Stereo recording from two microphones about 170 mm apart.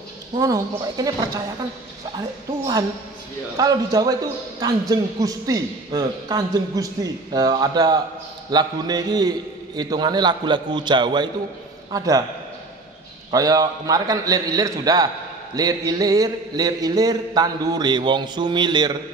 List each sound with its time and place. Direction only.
0.4 s a man's voice: 20° right (ahead or behind)
3.5 s a man's voice: 20° right (ahead or behind)
13.3 s a man's voice: 20° right (ahead or behind)